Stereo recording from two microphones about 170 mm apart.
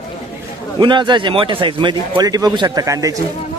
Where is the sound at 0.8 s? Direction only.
25° right (ahead or behind).